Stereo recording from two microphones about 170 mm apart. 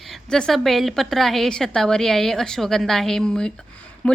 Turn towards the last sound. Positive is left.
turn(degrees=5)  # may be behind; listen again after turning